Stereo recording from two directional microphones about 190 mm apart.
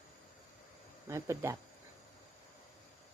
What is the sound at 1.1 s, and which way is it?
Speech, 15° right (ahead or behind).